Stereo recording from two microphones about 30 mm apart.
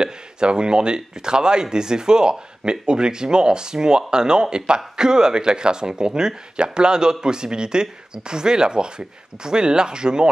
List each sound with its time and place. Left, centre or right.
0.0 s speech: right